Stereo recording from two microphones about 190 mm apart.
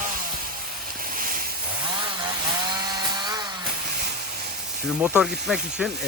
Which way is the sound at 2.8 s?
20° right (ahead or behind).